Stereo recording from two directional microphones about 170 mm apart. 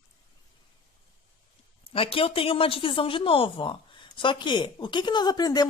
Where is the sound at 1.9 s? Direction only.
35° left (ahead or behind).